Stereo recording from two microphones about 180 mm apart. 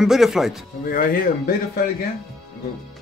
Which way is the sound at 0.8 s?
50° left (ahead or behind).